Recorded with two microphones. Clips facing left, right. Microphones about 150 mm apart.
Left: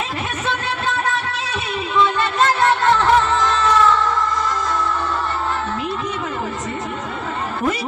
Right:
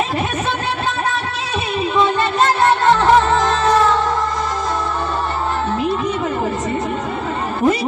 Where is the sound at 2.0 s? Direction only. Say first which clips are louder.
Right 1 dB; 45° right (ahead or behind).